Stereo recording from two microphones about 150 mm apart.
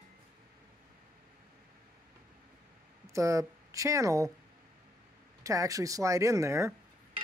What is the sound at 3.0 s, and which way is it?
Speech, 20° right (ahead or behind).